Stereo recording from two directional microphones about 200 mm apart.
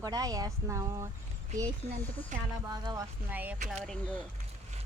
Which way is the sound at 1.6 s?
35° right (ahead or behind).